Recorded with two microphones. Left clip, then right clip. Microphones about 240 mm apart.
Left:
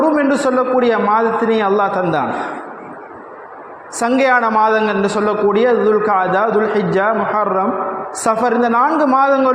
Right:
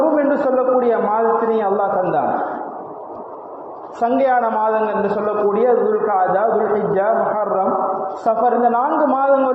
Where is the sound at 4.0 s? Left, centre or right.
Left.